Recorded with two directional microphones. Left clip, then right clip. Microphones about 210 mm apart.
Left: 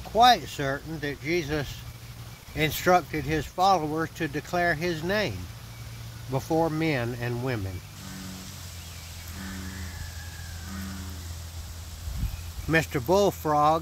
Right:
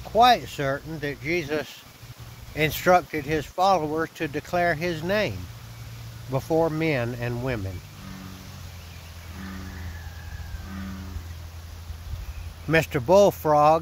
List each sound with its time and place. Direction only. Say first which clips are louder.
0.1 s speech: right 1 dB; 50° right (ahead or behind)
6.3 s speech: right 3 dB; 50° right (ahead or behind)
12.6 s speech: right 3 dB; 55° right (ahead or behind)